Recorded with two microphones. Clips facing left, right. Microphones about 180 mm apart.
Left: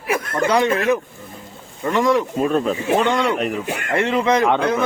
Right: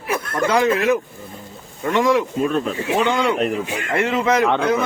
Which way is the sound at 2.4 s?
40° left (ahead or behind).